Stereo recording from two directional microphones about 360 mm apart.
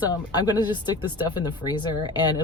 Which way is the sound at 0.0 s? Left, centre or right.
Centre.